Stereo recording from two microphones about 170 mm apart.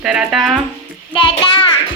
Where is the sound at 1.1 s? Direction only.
30° left (ahead or behind).